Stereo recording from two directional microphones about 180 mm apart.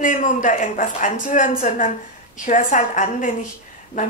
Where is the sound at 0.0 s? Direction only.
45° left (ahead or behind).